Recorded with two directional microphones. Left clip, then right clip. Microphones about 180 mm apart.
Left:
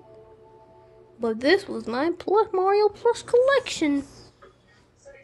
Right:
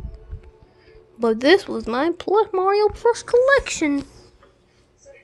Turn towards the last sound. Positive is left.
turn(degrees=-15)  # may be behind; listen again after turning